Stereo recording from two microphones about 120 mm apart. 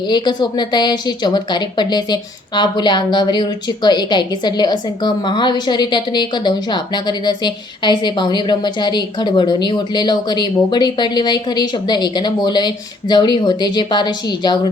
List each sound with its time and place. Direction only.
0.1 s a woman's voice: 40° left (ahead or behind)